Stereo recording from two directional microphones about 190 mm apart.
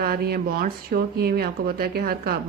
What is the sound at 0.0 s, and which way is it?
Speech, 55° right (ahead or behind).